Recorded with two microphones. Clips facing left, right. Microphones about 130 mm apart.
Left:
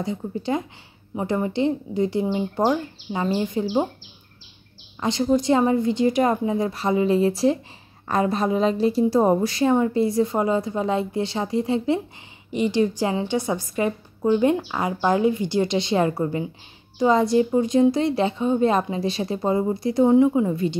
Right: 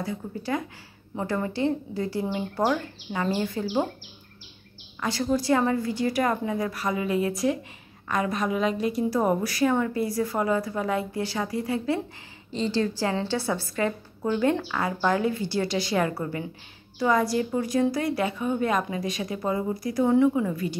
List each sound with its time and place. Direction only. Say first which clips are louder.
0.0 s a woman's voice: left 5 dB; 20° left (ahead or behind)
5.0 s a woman's voice: left 5 dB; 20° left (ahead or behind)